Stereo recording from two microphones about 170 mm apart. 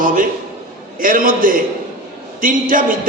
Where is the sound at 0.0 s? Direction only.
55° right (ahead or behind).